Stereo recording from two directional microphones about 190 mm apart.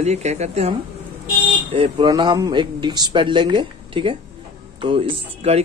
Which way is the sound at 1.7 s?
25° right (ahead or behind).